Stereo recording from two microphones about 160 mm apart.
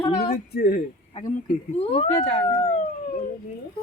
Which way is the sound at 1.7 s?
40° left (ahead or behind).